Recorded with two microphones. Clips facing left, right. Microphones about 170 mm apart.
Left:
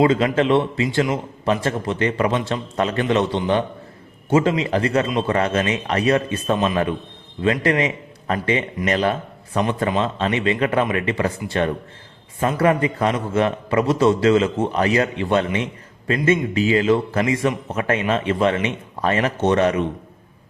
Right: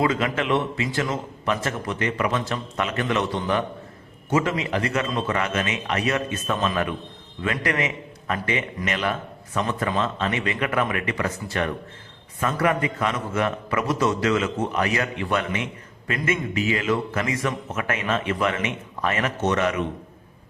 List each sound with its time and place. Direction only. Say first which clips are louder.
0.0 s a man's voice: left 6 dB; 30° left (ahead or behind)